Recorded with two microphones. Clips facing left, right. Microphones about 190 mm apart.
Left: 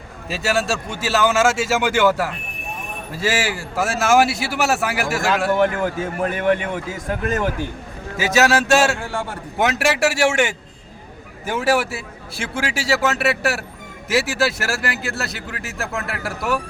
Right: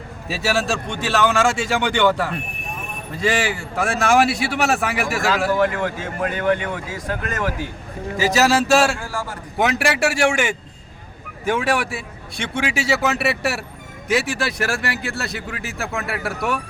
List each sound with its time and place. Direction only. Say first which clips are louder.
0.3 s speech: even; centre (ahead or behind)
5.5 s speech: left 2 dB; 25° left (ahead or behind)
7.1 s speech: left 3 dB; 25° left (ahead or behind)
8.1 s speech: even; centre (ahead or behind)
9.0 s speech: left 2 dB; 25° left (ahead or behind)
9.6 s speech: left 1 dB; centre (ahead or behind)